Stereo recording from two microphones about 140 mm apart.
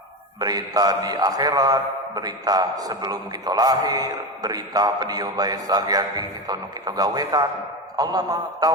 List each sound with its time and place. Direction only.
0.3 s a man's voice: 25° right (ahead or behind)